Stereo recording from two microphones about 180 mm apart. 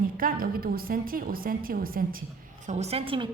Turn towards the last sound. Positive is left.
turn(degrees=-30)  # may be behind; listen again after turning